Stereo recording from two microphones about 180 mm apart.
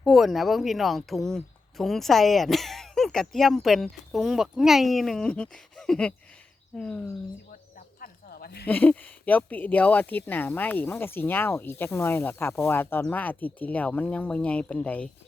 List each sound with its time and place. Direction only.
0.0 s speech: centre (ahead or behind)
7.8 s snake: 60° left (ahead or behind)
8.6 s speech: 10° left (ahead or behind)